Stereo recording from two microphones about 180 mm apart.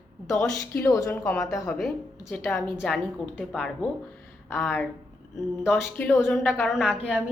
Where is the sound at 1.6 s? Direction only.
5° left (ahead or behind).